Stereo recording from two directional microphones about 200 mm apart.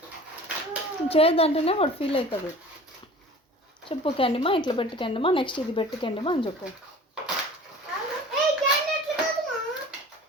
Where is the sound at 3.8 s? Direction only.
25° left (ahead or behind).